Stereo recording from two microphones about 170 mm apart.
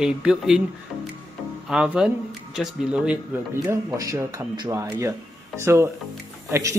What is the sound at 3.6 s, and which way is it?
Speech, 20° right (ahead or behind).